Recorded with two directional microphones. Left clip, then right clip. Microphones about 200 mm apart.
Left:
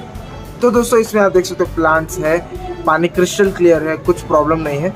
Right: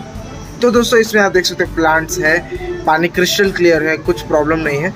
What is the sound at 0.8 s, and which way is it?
Speech, 20° left (ahead or behind).